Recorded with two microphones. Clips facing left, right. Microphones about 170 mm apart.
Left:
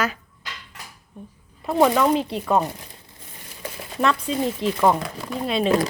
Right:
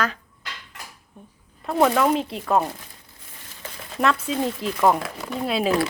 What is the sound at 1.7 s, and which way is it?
Speech, centre (ahead or behind).